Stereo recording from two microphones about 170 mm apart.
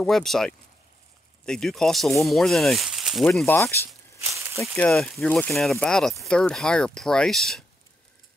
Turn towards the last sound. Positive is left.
turn(degrees=0)  # may be behind; listen again after turning